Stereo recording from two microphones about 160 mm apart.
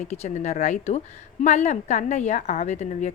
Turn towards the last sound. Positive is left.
turn(degrees=45)  # may be behind; listen again after turning